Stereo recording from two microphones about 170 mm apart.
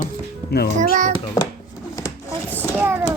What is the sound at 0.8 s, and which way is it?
Speech, 50° right (ahead or behind).